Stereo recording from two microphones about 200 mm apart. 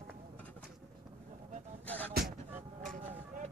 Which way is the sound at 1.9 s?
10° left (ahead or behind).